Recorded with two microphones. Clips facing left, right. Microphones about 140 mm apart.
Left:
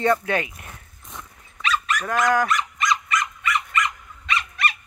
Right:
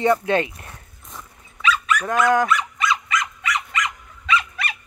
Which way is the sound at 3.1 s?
90° right.